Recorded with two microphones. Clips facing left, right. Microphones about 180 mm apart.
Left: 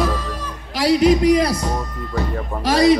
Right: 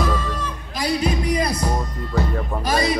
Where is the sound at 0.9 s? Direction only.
90° left.